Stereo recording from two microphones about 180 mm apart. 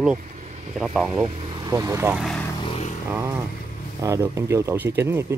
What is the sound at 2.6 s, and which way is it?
Vehicle, 30° left (ahead or behind).